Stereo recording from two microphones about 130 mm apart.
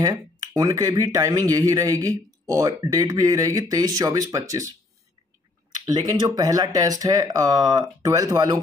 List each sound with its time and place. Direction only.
0.0 s speech: 30° right (ahead or behind)
5.9 s speech: 30° right (ahead or behind)